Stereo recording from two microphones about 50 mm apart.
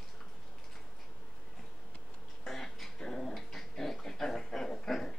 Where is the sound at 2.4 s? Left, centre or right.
Centre.